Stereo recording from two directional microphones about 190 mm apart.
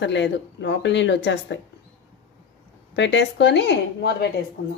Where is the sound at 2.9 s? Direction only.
70° left (ahead or behind).